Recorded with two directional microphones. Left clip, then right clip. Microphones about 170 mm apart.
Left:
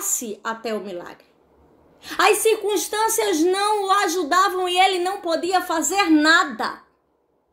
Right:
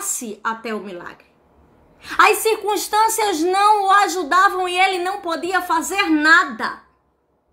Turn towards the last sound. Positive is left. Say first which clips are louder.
# right 3 dB
turn(degrees=-15)  # may be behind; listen again after turning